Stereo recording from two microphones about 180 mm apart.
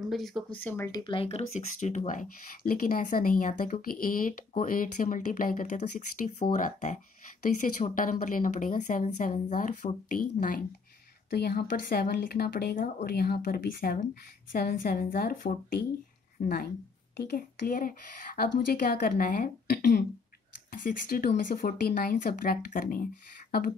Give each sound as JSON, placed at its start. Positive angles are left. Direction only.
{"t": 0.0, "sound": "speech", "side_deg": 0}
{"t": 0.7, "sound": "speech", "side_deg": 15}
{"t": 1.0, "sound": "speech", "side_deg": 30}
{"t": 20.7, "sound": "speech", "side_deg": 55}